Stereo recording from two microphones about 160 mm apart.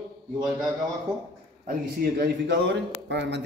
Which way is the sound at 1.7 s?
75° right (ahead or behind).